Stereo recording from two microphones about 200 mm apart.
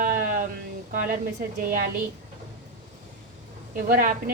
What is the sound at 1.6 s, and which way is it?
Speech, 40° right (ahead or behind).